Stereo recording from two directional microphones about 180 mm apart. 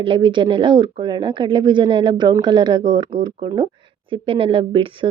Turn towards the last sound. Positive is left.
turn(degrees=-30)  # may be behind; listen again after turning